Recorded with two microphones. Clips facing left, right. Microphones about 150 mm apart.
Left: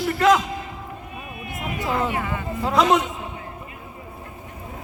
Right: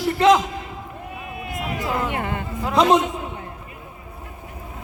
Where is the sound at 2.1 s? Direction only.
60° right (ahead or behind).